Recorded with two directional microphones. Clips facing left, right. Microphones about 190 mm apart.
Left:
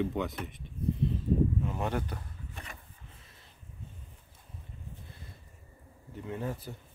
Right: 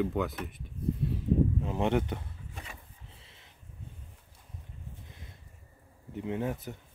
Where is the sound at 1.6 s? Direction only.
25° right (ahead or behind).